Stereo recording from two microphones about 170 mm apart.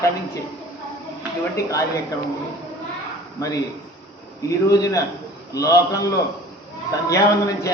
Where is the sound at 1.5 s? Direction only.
20° left (ahead or behind).